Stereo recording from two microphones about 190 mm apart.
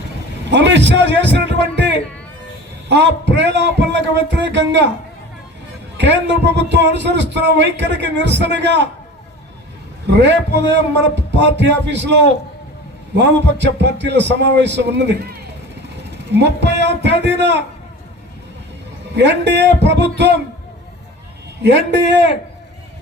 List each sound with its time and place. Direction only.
0.5 s a man's voice: 65° right (ahead or behind)
2.9 s a man's voice: 65° right (ahead or behind)
6.0 s a man's voice: 65° right (ahead or behind)
10.1 s a man's voice: 65° right (ahead or behind)
19.1 s a man's voice: 65° right (ahead or behind)
21.6 s a man's voice: 65° right (ahead or behind)